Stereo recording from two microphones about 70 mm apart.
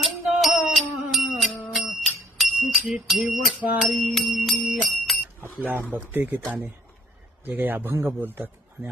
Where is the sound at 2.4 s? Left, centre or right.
Centre.